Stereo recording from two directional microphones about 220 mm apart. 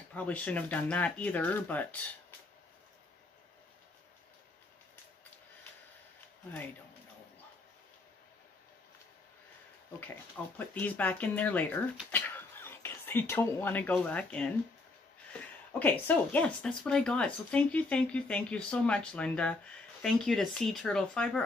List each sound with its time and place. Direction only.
0.1 s speech: 5° left (ahead or behind)
10.4 s speech: 5° left (ahead or behind)
15.8 s speech: 5° left (ahead or behind)